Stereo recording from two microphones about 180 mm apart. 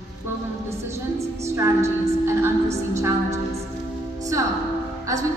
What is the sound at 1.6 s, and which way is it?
A woman's voice, 15° right (ahead or behind).